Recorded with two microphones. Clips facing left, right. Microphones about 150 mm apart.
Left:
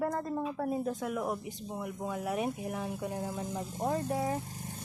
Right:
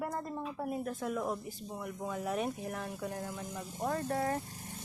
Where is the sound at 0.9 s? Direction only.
10° left (ahead or behind).